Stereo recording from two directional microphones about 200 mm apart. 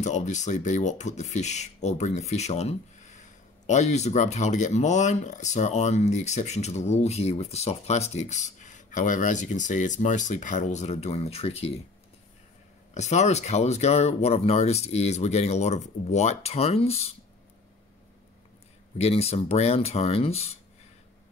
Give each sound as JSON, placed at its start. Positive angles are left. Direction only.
{"t": 0.0, "sound": "speech", "side_deg": 35}
{"t": 12.9, "sound": "speech", "side_deg": 35}
{"t": 18.9, "sound": "speech", "side_deg": 30}